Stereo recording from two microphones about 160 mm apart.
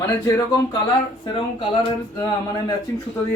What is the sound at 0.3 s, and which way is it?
Speech, 20° left (ahead or behind).